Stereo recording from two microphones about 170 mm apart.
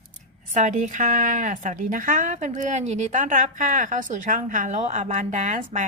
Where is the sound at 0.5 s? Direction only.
45° right (ahead or behind).